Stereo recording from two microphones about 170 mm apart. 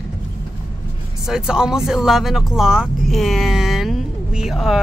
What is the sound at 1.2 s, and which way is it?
Speech, 5° right (ahead or behind).